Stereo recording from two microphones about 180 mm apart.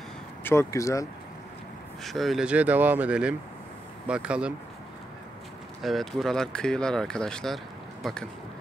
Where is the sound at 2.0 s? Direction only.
Centre (ahead or behind).